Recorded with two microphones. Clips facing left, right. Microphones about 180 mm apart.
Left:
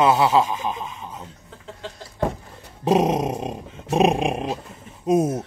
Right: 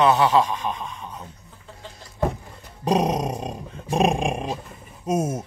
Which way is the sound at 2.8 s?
Centre (ahead or behind).